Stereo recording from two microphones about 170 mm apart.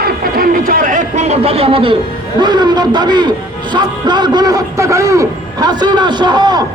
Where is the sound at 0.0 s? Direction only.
55° right (ahead or behind); by 2.0 s 30° right (ahead or behind).